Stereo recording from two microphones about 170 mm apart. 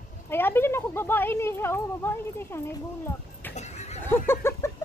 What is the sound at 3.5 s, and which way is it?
Horse, 40° left (ahead or behind).